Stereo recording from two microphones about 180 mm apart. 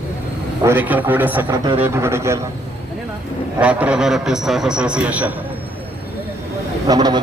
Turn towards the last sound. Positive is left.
turn(degrees=-25)  # may be behind; listen again after turning